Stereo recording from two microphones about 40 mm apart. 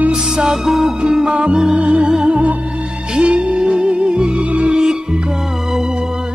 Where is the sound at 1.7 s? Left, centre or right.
Right.